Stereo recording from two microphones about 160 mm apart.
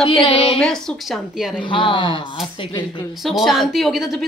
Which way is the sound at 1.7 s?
30° left (ahead or behind).